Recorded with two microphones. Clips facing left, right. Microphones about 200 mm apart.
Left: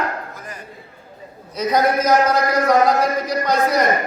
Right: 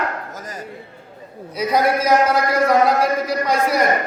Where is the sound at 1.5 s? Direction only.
5° right (ahead or behind).